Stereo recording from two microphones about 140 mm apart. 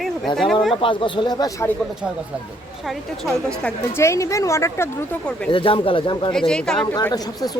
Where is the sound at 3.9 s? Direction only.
20° left (ahead or behind).